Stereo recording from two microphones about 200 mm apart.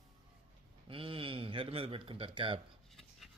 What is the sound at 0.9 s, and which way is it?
A woman's voice, 25° right (ahead or behind).